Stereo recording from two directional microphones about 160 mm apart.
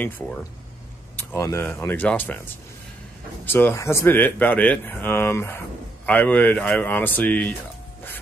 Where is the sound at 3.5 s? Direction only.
15° left (ahead or behind).